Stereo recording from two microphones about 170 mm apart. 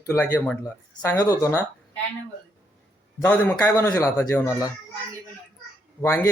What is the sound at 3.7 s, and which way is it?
Speech, 20° left (ahead or behind).